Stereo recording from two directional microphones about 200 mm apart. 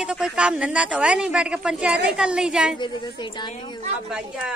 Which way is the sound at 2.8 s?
20° left (ahead or behind).